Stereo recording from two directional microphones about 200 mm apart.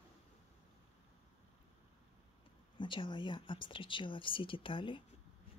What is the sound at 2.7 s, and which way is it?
Speech, 25° left (ahead or behind).